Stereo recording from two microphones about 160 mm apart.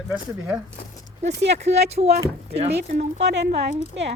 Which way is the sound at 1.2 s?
45° right (ahead or behind).